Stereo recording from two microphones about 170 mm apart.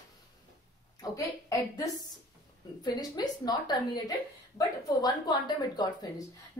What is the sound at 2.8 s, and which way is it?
A woman's voice, 25° left (ahead or behind).